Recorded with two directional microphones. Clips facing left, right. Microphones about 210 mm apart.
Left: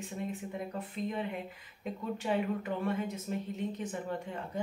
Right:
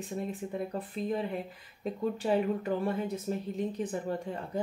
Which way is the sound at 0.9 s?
35° right (ahead or behind).